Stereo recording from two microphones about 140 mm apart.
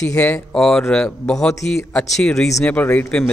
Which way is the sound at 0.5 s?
5° left (ahead or behind).